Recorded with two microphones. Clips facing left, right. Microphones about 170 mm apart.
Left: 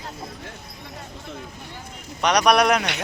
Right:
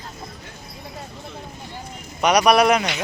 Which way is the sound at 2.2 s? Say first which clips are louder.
Right 2 dB; 10° right (ahead or behind).